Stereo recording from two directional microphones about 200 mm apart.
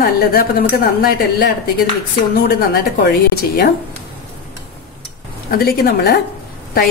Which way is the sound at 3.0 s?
50° left (ahead or behind).